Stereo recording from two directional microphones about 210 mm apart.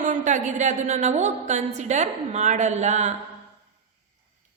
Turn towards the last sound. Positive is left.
turn(degrees=-35)  # may be behind; listen again after turning